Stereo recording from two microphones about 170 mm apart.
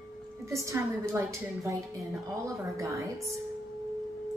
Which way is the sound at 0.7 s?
15° right (ahead or behind).